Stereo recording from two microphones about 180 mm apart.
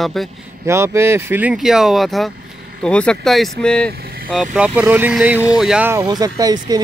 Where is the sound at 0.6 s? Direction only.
15° right (ahead or behind).